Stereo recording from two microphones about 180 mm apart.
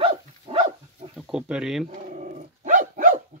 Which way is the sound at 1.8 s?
45° right (ahead or behind).